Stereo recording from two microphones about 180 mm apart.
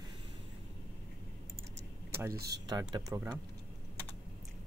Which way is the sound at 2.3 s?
60° right (ahead or behind).